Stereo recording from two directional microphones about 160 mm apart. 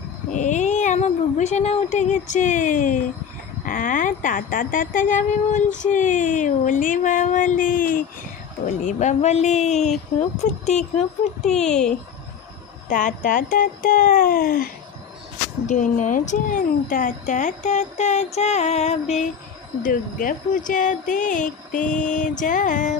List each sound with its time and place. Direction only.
0.3 s speech: 50° left (ahead or behind)
8.6 s speech: 50° left (ahead or behind)
11.6 s speech: 5° left (ahead or behind)
12.9 s speech: 55° left (ahead or behind)
15.7 s speech: 55° left (ahead or behind)
19.8 s speech: 60° left (ahead or behind)